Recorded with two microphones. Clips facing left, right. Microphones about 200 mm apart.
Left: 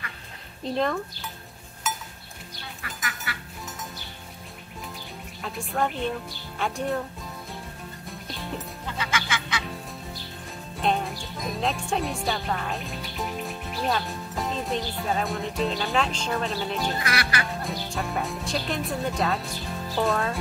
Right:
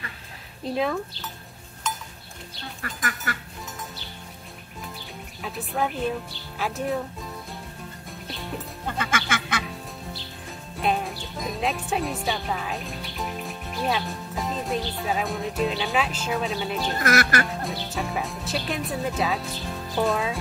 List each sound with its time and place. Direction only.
0.7 s speech: 5° right (ahead or behind)
1.8 s goat: 5° left (ahead or behind)
2.8 s speech: 45° right (ahead or behind)
5.4 s speech: 5° right (ahead or behind)
8.8 s duck: 50° right (ahead or behind)
10.8 s music: 5° right (ahead or behind)
11.4 s speech: 5° right (ahead or behind)
17.0 s speech: 45° right (ahead or behind)
17.6 s speech: centre (ahead or behind)